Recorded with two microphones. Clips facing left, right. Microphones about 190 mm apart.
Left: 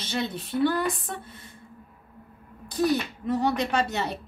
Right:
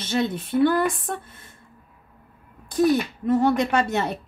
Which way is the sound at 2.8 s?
50° right (ahead or behind).